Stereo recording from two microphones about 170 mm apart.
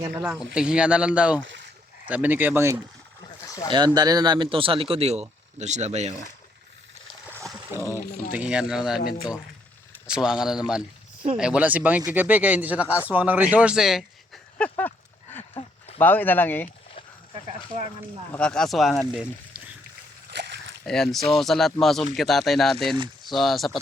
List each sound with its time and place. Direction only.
0.0 s a man's voice: 10° right (ahead or behind)
1.4 s speech: 90° right
2.0 s speech: 10° right (ahead or behind)
3.7 s speech: 25° right (ahead or behind); by 6.1 s 40° right (ahead or behind)
7.7 s speech: 15° right (ahead or behind)
10.2 s a man's voice: 5° right (ahead or behind)
14.6 s livestock: 10° left (ahead or behind)
16.0 s speech: 10° left (ahead or behind)
18.3 s a man's voice: 5° left (ahead or behind)
20.3 s a sound: 80° right
20.8 s a man's voice: 5° left (ahead or behind)